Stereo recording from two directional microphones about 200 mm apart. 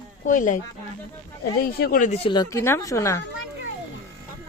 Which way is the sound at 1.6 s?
50° left (ahead or behind).